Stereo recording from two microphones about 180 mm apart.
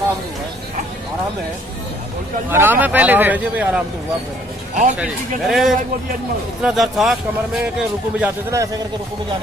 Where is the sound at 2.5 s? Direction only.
10° right (ahead or behind).